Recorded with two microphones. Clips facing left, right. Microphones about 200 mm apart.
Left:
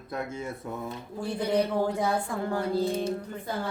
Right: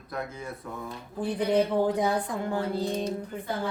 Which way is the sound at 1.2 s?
15° right (ahead or behind).